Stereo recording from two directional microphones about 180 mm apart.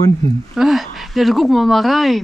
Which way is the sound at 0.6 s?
Centre (ahead or behind).